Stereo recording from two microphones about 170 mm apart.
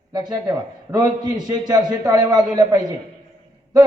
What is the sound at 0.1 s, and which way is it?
A woman's voice, 20° right (ahead or behind).